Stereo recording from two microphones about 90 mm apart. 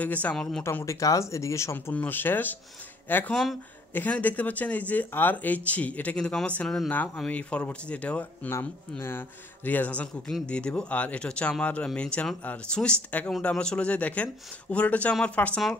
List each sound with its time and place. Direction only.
0.0 s speech: 15° left (ahead or behind)
0.7 s speech: 30° left (ahead or behind)
2.0 s speech: 20° left (ahead or behind)
8.5 s speech: 30° left (ahead or behind)